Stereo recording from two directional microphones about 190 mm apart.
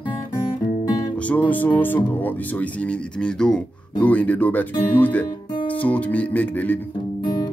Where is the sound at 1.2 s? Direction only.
10° left (ahead or behind).